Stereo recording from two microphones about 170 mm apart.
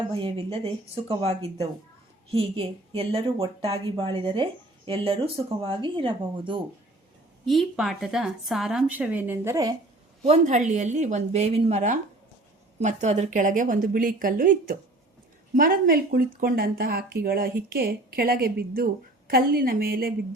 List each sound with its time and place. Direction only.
0.1 s a woman's voice: 30° right (ahead or behind)
7.4 s speech: centre (ahead or behind); by 9.7 s 20° right (ahead or behind)
10.2 s speech: 45° right (ahead or behind); by 20.1 s 60° right (ahead or behind)